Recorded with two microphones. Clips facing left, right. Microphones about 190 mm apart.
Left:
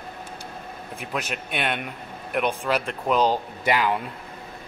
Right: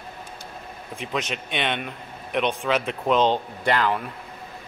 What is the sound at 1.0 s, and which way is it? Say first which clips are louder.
Speech: right 2 dB; 5° left (ahead or behind).